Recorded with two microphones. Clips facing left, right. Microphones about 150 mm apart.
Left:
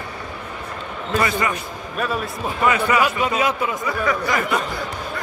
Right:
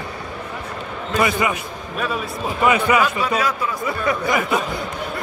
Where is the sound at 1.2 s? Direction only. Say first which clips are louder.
Right 4 dB; 10° right (ahead or behind).